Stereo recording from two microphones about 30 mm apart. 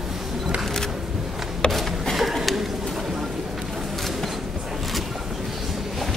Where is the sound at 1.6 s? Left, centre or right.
Left.